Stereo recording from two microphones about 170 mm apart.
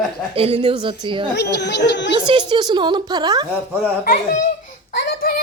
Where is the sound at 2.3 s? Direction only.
25° right (ahead or behind).